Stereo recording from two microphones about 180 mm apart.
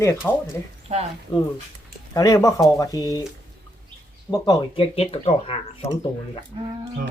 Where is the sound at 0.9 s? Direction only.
35° right (ahead or behind).